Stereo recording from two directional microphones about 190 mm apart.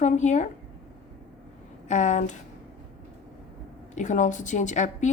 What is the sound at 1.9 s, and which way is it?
Speech, 40° left (ahead or behind).